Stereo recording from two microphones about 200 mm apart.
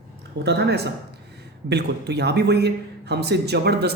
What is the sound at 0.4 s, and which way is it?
Speech, 55° right (ahead or behind).